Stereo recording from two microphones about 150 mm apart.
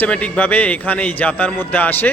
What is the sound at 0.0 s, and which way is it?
A man's voice, 10° left (ahead or behind).